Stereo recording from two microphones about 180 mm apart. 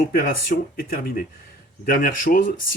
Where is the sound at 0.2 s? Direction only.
55° left (ahead or behind).